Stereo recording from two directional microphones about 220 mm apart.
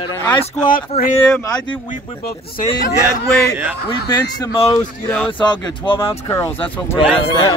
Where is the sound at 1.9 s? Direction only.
40° left (ahead or behind).